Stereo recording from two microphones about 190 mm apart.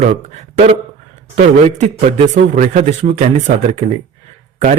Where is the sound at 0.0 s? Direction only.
40° right (ahead or behind).